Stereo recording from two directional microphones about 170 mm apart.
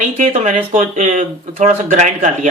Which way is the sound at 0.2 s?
45° right (ahead or behind).